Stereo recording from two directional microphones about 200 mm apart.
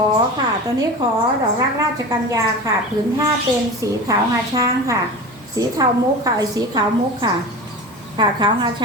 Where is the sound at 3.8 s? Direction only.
15° right (ahead or behind).